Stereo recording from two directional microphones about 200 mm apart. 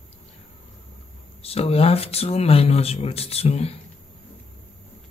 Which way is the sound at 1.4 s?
30° left (ahead or behind).